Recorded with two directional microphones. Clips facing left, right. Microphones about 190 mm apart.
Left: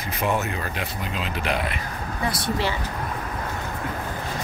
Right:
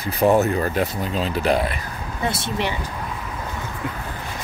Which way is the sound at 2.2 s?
25° right (ahead or behind).